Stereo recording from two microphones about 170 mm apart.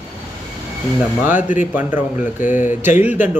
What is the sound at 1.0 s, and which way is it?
Speech, 10° right (ahead or behind).